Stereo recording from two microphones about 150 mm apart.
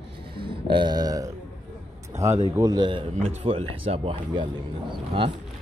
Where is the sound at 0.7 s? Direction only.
30° right (ahead or behind).